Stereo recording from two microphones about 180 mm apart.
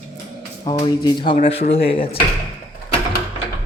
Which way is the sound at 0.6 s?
25° left (ahead or behind).